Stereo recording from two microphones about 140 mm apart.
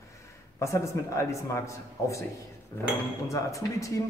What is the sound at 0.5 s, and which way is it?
Speech, 20° left (ahead or behind).